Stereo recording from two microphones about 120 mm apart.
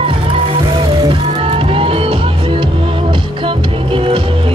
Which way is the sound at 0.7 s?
45° right (ahead or behind).